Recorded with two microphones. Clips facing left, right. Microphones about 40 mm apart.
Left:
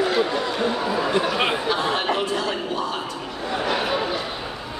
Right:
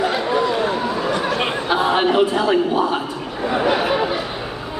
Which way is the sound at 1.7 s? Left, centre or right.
Right.